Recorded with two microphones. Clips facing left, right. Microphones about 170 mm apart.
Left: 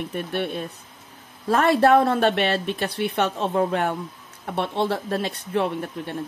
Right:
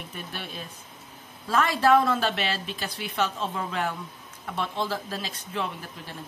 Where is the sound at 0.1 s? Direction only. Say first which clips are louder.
Left 11 dB; 60° left (ahead or behind).